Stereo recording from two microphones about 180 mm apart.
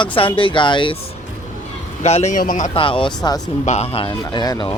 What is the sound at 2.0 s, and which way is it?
Speech, 40° left (ahead or behind).